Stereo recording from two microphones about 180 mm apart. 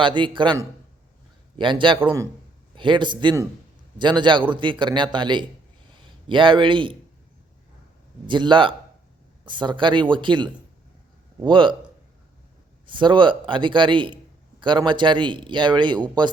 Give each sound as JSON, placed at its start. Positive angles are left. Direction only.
{"t": 0.0, "sound": "speech", "side_deg": -25}
{"t": 1.5, "sound": "speech", "side_deg": -25}
{"t": 2.0, "sound": "speech", "side_deg": -10}
{"t": 2.7, "sound": "a man's voice", "side_deg": -25}
{"t": 8.3, "sound": "speech", "side_deg": -25}
{"t": 12.8, "sound": "speech", "side_deg": -25}